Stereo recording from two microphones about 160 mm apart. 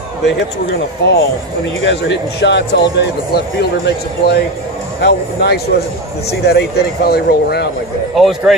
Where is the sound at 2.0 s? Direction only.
90° left.